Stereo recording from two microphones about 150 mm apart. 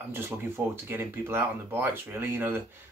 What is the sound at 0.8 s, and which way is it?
Speech, 15° right (ahead or behind).